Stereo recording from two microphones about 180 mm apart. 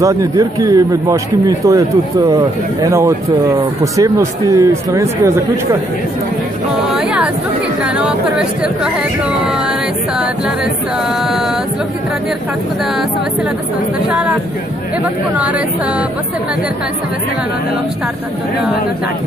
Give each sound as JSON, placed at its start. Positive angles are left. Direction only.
{"t": 0.0, "sound": "a man's voice", "side_deg": -20}
{"t": 7.0, "sound": "music", "side_deg": -5}
{"t": 7.8, "sound": "speech", "side_deg": -5}
{"t": 9.5, "sound": "music", "side_deg": -5}
{"t": 15.3, "sound": "a man's voice", "side_deg": -5}